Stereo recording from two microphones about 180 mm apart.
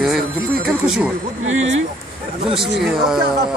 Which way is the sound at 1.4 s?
90° right.